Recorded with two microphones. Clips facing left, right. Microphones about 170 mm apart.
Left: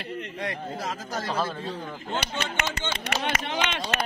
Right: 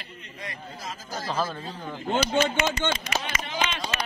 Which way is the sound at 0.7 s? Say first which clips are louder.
Left 4 dB; 70° left (ahead or behind).